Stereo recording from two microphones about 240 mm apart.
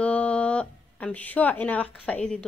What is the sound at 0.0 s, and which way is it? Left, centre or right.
A woman's voice, centre.